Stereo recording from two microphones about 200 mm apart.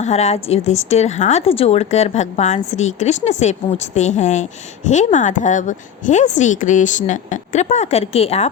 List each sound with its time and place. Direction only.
0.0 s a woman's voice: 35° left (ahead or behind)